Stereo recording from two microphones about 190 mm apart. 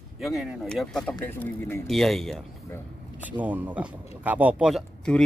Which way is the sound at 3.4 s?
10° right (ahead or behind).